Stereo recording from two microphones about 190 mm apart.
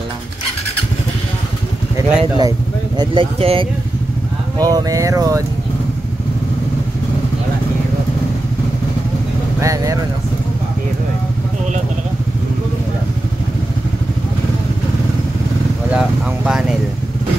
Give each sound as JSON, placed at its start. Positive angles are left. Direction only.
{"t": 2.1, "sound": "speech", "side_deg": -20}
{"t": 4.6, "sound": "speech", "side_deg": -20}
{"t": 9.6, "sound": "speech", "side_deg": -15}